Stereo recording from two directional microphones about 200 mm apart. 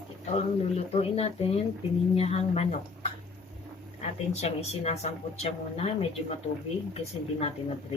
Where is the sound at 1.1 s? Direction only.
30° left (ahead or behind).